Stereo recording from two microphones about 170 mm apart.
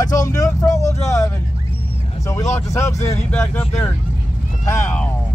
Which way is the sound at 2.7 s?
15° left (ahead or behind).